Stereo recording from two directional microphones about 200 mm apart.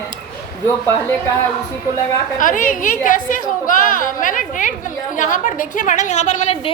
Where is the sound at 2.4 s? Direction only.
40° left (ahead or behind).